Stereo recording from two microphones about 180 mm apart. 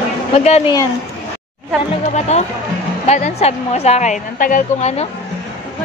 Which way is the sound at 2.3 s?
35° left (ahead or behind).